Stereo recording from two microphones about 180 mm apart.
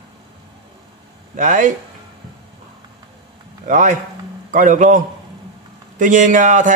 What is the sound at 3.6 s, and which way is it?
A man's voice, 45° right (ahead or behind).